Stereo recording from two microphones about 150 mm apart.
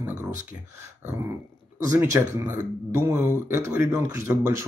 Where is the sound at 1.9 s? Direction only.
20° right (ahead or behind).